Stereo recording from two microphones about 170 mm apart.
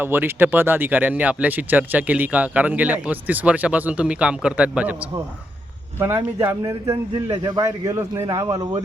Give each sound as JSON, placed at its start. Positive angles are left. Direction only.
{"t": 0.0, "sound": "speech", "side_deg": -10}